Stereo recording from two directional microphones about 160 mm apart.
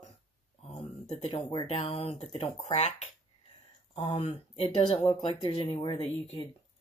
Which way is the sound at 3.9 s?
35° left (ahead or behind).